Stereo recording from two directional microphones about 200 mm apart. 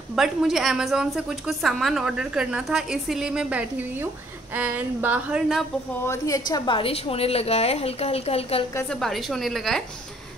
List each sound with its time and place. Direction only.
0.1 s a woman's voice: centre (ahead or behind)
6.0 s a woman's voice: 15° left (ahead or behind)
9.0 s a woman's voice: centre (ahead or behind)